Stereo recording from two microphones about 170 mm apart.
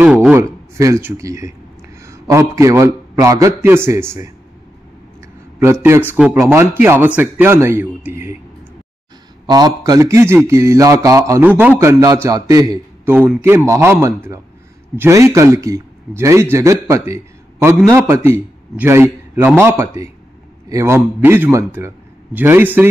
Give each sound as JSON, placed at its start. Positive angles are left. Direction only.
{"t": 0.0, "sound": "a man's voice", "side_deg": -5}
{"t": 0.7, "sound": "a man's voice", "side_deg": -20}
{"t": 5.6, "sound": "a man's voice", "side_deg": -15}
{"t": 9.5, "sound": "a man's voice", "side_deg": -25}